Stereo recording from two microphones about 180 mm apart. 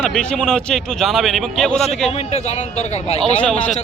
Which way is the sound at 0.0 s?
5° left (ahead or behind).